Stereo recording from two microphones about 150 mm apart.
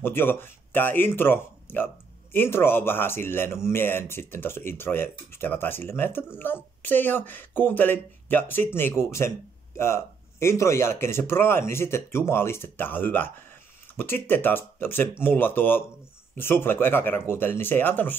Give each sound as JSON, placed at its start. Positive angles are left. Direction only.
{"t": 0.0, "sound": "speech", "side_deg": 15}